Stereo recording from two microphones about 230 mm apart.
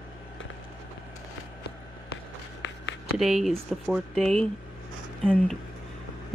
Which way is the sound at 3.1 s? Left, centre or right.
Centre.